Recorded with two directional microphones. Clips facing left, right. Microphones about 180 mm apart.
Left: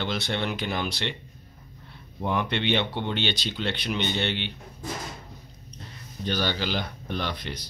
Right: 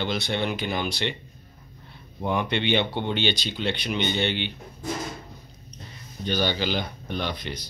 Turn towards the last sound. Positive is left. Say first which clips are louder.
# right 1 dB
turn(degrees=0)  # may be behind; listen again after turning